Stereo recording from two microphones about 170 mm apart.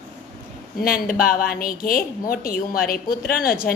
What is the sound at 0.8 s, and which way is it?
A woman's voice, 60° left (ahead or behind).